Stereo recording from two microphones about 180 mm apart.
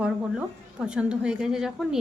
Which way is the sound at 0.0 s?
5° right (ahead or behind).